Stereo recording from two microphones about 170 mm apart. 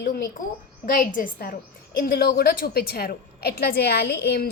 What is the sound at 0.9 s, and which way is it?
A woman's voice, 55° left (ahead or behind).